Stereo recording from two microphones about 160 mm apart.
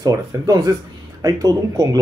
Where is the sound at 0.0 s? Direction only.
20° right (ahead or behind).